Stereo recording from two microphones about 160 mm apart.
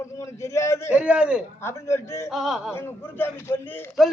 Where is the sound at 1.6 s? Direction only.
15° left (ahead or behind).